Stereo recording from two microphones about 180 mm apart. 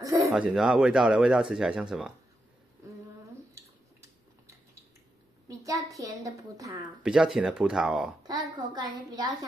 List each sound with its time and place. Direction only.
0.3 s speech: 5° right (ahead or behind)
5.5 s a woman's voice: 20° right (ahead or behind)
7.0 s speech: 5° right (ahead or behind)
8.2 s a woman's voice: 25° right (ahead or behind)